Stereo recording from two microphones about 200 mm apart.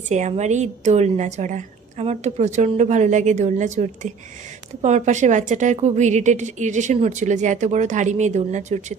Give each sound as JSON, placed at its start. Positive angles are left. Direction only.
{"t": 0.1, "sound": "a woman's voice", "side_deg": -35}